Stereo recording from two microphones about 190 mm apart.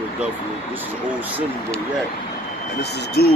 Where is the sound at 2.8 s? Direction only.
55° left (ahead or behind).